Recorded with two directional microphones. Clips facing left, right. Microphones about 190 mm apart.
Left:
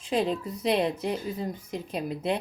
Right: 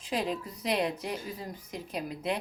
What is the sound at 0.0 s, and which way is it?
A woman's voice, 25° left (ahead or behind).